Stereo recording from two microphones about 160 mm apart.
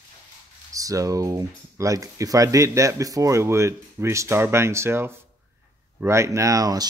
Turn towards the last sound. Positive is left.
turn(degrees=-20)  # may be behind; listen again after turning